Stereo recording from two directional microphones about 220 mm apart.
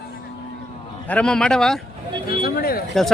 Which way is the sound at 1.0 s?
5° left (ahead or behind).